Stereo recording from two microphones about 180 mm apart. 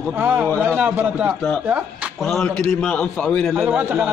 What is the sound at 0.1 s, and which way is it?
A man's voice, 10° right (ahead or behind).